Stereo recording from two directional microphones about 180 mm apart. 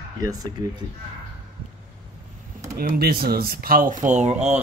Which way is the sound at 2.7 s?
55° right (ahead or behind).